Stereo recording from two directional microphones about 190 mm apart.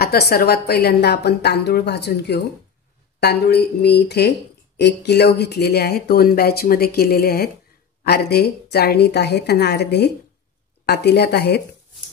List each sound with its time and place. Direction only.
0.0 s speech: 55° left (ahead or behind)